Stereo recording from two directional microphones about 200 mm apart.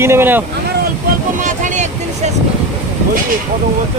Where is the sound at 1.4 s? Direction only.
40° right (ahead or behind).